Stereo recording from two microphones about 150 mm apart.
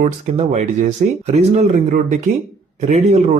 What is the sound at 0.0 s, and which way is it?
Speech, 55° right (ahead or behind).